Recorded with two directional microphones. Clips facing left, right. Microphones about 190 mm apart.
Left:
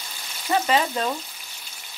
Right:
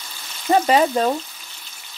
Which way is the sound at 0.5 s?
40° right (ahead or behind).